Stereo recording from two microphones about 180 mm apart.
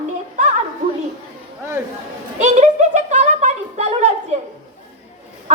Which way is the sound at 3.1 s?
40° right (ahead or behind).